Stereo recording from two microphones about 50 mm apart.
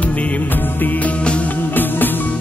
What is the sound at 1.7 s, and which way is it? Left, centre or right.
Music, left.